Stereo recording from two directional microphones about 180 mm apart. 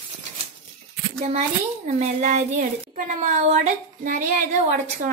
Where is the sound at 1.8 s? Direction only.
40° right (ahead or behind).